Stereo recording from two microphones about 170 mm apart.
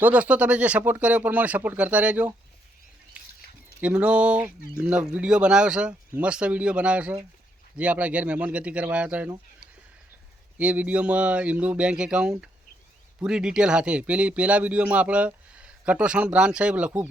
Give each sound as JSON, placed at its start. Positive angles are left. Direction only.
{"t": 0.0, "sound": "speech", "side_deg": -10}
{"t": 3.8, "sound": "speech", "side_deg": -5}
{"t": 10.6, "sound": "speech", "side_deg": -10}